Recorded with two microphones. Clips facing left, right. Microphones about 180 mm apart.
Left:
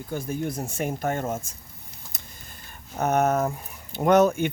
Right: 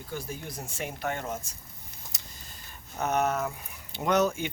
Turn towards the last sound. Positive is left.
turn(degrees=55)  # may be behind; listen again after turning